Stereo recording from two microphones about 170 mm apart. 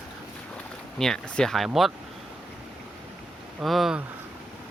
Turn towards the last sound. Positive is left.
turn(degrees=0)  # may be behind; listen again after turning